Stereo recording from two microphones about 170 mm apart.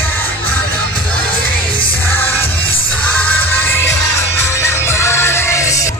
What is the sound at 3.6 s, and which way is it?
Music, 10° left (ahead or behind).